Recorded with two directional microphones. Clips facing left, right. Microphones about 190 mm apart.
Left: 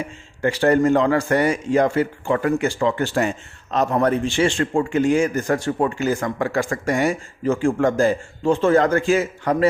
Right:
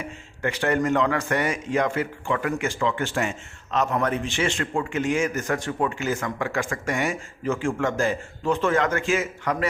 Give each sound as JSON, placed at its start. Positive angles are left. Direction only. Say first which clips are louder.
{"t": 0.4, "sound": "a man's voice", "louder": "left 7 dB", "side_deg": 35}